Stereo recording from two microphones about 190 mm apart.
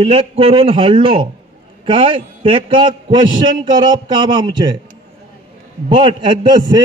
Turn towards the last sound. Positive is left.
turn(degrees=-20)  # may be behind; listen again after turning